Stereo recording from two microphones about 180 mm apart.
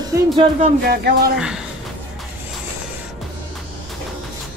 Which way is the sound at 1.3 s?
5° right (ahead or behind).